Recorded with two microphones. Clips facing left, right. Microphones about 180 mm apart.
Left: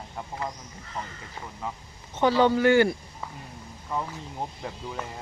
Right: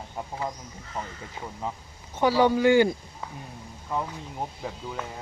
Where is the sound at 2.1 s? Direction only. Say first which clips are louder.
Even; 10° right (ahead or behind).